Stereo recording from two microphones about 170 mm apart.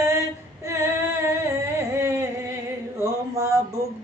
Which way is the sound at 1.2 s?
15° right (ahead or behind).